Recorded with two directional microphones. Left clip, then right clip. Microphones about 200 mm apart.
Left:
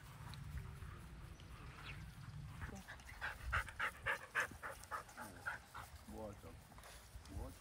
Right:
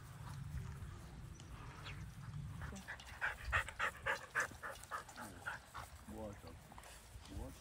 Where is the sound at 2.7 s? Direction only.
15° right (ahead or behind).